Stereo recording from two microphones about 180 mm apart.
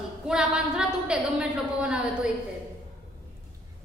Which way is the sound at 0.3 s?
5° right (ahead or behind).